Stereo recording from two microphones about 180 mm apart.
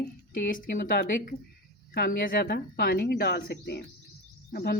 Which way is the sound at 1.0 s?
60° left (ahead or behind).